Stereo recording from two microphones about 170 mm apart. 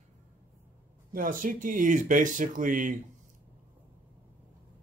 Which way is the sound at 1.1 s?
55° right (ahead or behind).